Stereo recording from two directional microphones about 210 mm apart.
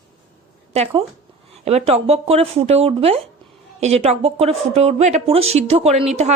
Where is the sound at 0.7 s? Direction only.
30° right (ahead or behind).